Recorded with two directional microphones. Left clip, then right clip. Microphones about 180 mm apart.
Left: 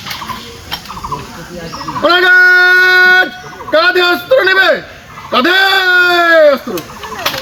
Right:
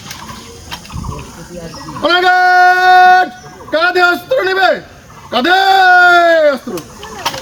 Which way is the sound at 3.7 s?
25° right (ahead or behind).